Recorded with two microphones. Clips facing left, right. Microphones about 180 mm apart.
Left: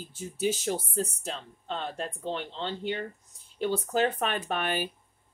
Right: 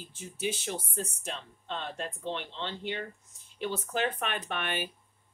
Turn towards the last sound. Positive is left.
turn(degrees=40)  # may be behind; listen again after turning